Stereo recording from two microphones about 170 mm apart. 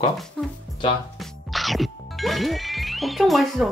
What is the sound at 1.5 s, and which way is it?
Speech, centre (ahead or behind).